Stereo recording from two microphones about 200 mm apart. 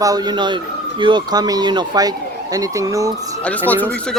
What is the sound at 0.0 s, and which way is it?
Speech, 20° right (ahead or behind).